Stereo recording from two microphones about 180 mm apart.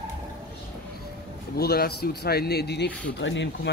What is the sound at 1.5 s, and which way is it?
Speech, 60° left (ahead or behind).